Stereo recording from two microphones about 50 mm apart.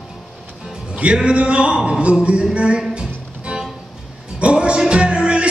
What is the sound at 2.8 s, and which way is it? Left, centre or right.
Music, centre.